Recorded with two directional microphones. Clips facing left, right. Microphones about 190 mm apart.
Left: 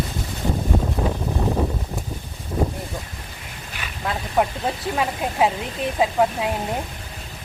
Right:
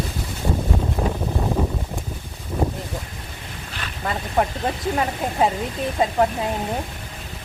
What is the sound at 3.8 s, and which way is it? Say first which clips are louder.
Speech: even; centre (ahead or behind).